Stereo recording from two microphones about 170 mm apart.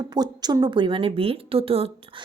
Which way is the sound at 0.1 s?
25° right (ahead or behind).